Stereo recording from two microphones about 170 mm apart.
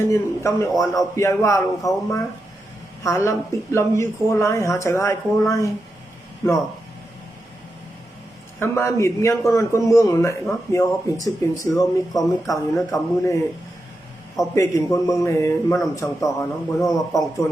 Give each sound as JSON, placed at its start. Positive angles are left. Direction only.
{"t": 0.0, "sound": "speech", "side_deg": 15}
{"t": 0.7, "sound": "a man's voice", "side_deg": 0}
{"t": 1.1, "sound": "speech", "side_deg": 15}
{"t": 8.5, "sound": "speech", "side_deg": 15}
{"t": 14.5, "sound": "speech", "side_deg": 20}
{"t": 16.8, "sound": "a man's voice", "side_deg": 0}